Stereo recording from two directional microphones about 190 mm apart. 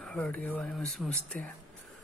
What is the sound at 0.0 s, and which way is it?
Speech, 5° left (ahead or behind).